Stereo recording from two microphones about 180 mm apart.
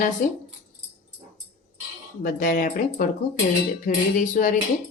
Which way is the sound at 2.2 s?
50° left (ahead or behind).